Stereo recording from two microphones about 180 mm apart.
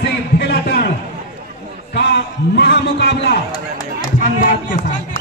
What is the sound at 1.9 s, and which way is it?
A man's voice, 65° left (ahead or behind).